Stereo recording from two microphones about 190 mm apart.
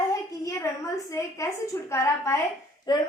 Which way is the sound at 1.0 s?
15° left (ahead or behind).